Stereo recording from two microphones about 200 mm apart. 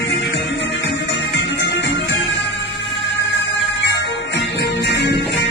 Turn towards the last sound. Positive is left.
turn(degrees=60)  # may be behind; listen again after turning